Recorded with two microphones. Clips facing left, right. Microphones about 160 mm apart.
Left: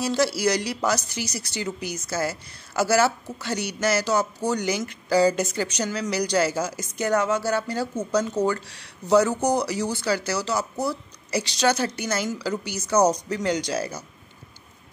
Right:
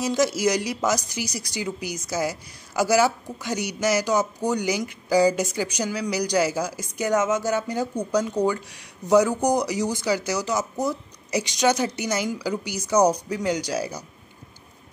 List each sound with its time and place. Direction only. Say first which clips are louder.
0.0 s a woman's voice: right 1 dB; 15° right (ahead or behind)